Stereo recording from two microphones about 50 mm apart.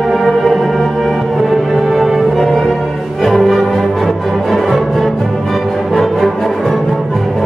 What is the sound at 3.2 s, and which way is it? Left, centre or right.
Music, centre.